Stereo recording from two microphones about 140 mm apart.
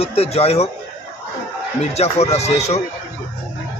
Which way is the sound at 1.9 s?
50° left (ahead or behind).